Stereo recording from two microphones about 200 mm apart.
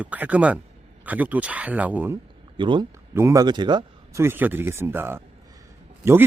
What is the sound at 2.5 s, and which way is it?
Speech, 25° right (ahead or behind).